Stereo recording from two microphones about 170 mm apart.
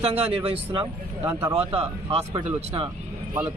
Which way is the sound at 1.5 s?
35° right (ahead or behind).